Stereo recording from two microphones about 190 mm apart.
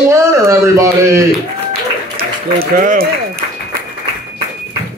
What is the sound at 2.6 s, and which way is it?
Speech, 50° right (ahead or behind).